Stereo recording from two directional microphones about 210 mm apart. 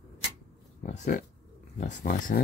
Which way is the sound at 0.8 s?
35° left (ahead or behind).